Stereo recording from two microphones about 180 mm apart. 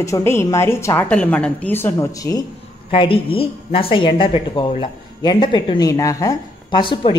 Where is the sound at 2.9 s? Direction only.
30° left (ahead or behind).